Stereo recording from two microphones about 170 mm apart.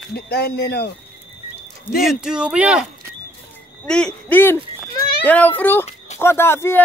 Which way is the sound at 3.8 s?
5° left (ahead or behind).